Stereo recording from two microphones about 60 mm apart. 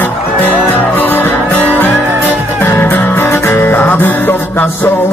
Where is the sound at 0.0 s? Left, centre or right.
Left.